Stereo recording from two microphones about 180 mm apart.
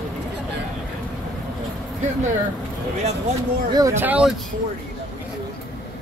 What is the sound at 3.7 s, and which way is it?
Speech, 20° right (ahead or behind).